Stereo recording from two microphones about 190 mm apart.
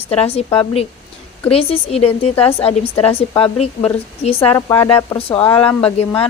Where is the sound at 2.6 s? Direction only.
30° left (ahead or behind).